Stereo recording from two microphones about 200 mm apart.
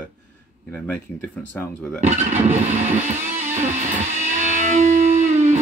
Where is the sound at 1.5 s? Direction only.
5° left (ahead or behind).